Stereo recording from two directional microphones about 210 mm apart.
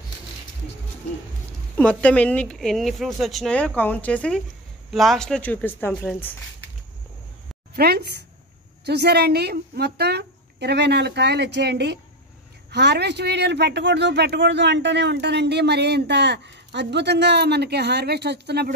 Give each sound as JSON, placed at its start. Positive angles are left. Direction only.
{"t": 1.8, "sound": "a woman's voice", "side_deg": 5}
{"t": 7.7, "sound": "speech", "side_deg": -50}